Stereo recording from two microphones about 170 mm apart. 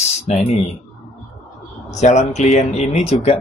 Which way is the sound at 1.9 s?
45° left (ahead or behind).